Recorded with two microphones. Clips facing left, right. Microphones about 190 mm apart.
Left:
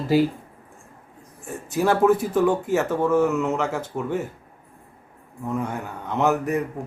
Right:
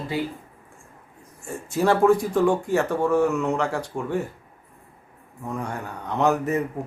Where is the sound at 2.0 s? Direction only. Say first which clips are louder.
Left 1 dB; 20° left (ahead or behind).